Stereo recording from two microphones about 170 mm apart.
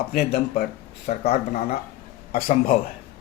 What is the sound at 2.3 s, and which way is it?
Speech, 60° left (ahead or behind).